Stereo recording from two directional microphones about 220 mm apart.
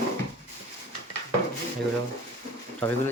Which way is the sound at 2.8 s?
10° left (ahead or behind).